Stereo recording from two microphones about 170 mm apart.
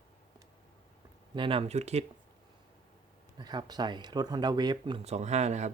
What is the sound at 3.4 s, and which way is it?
Speech, 25° right (ahead or behind).